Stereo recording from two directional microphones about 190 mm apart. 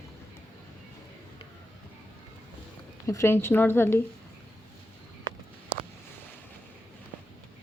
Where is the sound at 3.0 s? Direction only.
15° left (ahead or behind).